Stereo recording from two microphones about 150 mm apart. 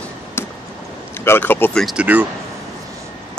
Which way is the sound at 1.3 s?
15° left (ahead or behind).